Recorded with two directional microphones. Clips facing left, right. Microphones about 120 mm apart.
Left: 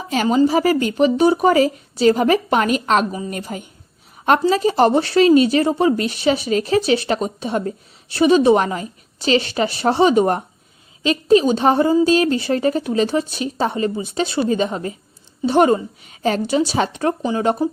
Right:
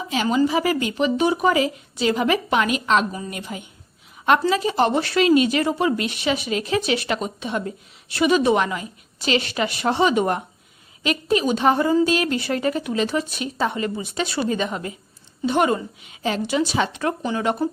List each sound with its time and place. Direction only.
0.1 s a woman's voice: 45° left (ahead or behind)